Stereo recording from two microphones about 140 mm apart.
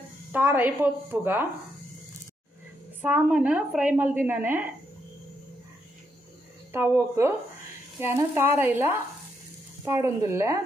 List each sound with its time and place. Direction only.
0.3 s a woman's voice: 10° right (ahead or behind)
3.0 s a woman's voice: 10° right (ahead or behind)
6.7 s a woman's voice: 15° right (ahead or behind)